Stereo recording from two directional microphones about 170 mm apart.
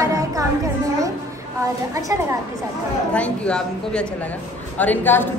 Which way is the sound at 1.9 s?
20° right (ahead or behind).